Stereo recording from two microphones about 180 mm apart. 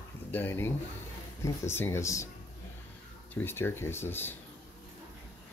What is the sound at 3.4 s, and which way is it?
Speech, 10° left (ahead or behind).